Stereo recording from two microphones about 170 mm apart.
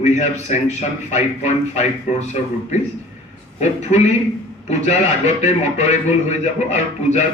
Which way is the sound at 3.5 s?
40° left (ahead or behind).